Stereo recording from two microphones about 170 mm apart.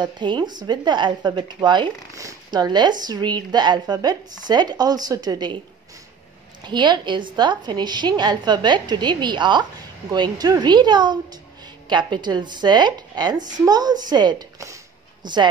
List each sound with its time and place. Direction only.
0.0 s speech: 25° right (ahead or behind)
6.6 s speech: 25° right (ahead or behind)